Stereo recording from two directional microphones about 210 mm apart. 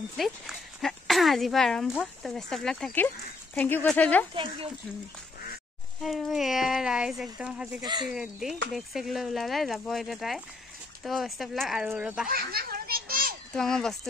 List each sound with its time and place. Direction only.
0.2 s speech: centre (ahead or behind)
4.3 s speech: 25° right (ahead or behind)
6.0 s speech: centre (ahead or behind)
7.8 s speech: 20° right (ahead or behind)
8.1 s speech: centre (ahead or behind)
12.3 s a child's voice: 45° right (ahead or behind)
13.5 s speech: 5° left (ahead or behind)